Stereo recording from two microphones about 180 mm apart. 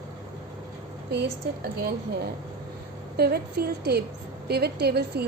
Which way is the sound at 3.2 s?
60° right (ahead or behind).